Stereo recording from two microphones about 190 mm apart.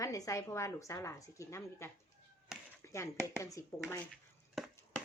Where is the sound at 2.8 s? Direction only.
15° left (ahead or behind).